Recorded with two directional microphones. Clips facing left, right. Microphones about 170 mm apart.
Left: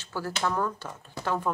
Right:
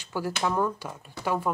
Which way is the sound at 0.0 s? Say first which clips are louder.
Right 2 dB; 15° right (ahead or behind).